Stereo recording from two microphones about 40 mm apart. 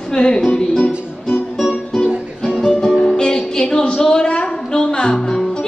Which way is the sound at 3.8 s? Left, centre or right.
Centre.